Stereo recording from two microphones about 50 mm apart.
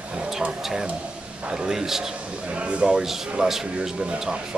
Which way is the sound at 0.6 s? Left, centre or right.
Centre.